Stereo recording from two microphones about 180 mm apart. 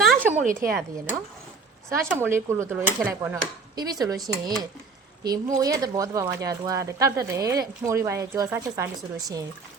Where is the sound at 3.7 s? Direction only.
20° right (ahead or behind).